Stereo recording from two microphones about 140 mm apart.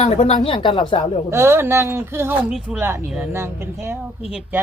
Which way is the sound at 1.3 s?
15° right (ahead or behind).